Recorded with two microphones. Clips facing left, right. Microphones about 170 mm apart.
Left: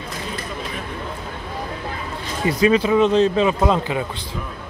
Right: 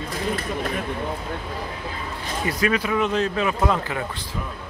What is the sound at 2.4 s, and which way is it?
Speech, 25° left (ahead or behind).